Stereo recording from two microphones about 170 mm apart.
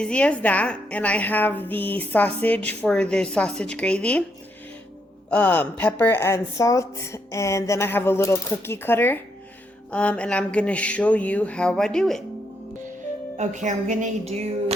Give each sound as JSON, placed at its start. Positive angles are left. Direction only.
{"t": 0.0, "sound": "a woman's voice", "side_deg": 5}
{"t": 5.3, "sound": "a woman's voice", "side_deg": 10}
{"t": 13.3, "sound": "a woman's voice", "side_deg": -45}